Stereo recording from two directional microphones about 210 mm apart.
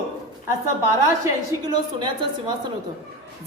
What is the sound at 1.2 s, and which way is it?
A woman's voice, 20° right (ahead or behind).